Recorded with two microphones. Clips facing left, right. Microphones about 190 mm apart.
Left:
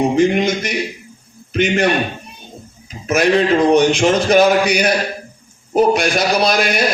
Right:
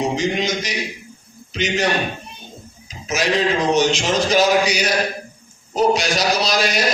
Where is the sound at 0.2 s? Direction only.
55° left (ahead or behind).